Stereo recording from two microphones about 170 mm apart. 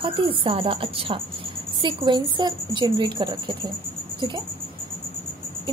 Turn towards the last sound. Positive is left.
turn(degrees=-25)  # may be behind; listen again after turning